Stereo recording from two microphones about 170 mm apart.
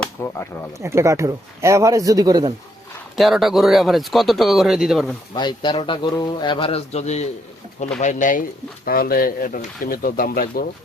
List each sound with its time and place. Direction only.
0.2 s speech: 15° left (ahead or behind)
0.7 s speech: 15° right (ahead or behind)
3.2 s speech: centre (ahead or behind)
5.3 s a man's voice: 25° left (ahead or behind); by 10.7 s 60° left (ahead or behind)